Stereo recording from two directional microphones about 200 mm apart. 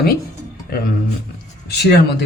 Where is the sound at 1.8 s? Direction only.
55° left (ahead or behind).